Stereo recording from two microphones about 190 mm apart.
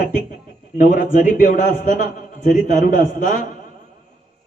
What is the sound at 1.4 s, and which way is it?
A man's voice, 45° left (ahead or behind).